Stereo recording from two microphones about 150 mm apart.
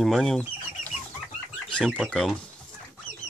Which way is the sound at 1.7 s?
5° left (ahead or behind).